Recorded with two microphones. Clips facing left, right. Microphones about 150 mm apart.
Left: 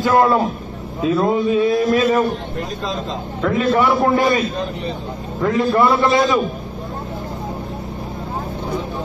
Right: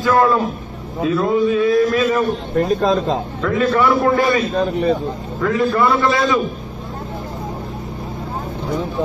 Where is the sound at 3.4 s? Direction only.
25° left (ahead or behind).